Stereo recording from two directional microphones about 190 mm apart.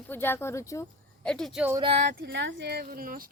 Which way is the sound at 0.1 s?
10° left (ahead or behind).